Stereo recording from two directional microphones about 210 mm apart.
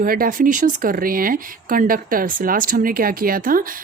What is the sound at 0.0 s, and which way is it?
Speech, 40° right (ahead or behind).